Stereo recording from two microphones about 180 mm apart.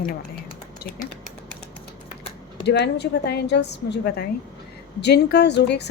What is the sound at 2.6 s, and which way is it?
A woman's voice, 70° left (ahead or behind).